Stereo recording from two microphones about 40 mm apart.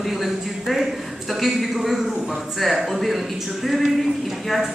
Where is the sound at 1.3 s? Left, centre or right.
Centre.